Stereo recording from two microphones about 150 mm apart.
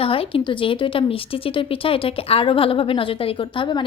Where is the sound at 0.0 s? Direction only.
40° left (ahead or behind).